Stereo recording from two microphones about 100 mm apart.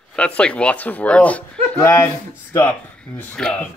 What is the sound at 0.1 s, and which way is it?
Speech, 10° left (ahead or behind).